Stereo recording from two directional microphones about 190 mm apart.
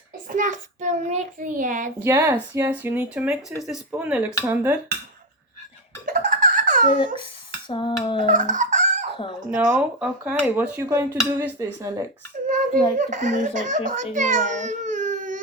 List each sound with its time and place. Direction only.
0.3 s a child's voice: 40° right (ahead or behind)
2.0 s speech: 15° right (ahead or behind)
6.1 s baby laughter: 45° right (ahead or behind)
7.7 s dishes: 25° left (ahead or behind)
8.3 s a sound: 45° right (ahead or behind)
9.6 s speech: 5° right (ahead or behind)
12.5 s a child's voice: 45° right (ahead or behind)
13.9 s babbling: 40° right (ahead or behind)